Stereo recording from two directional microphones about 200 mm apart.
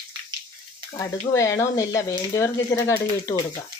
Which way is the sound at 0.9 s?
15° left (ahead or behind).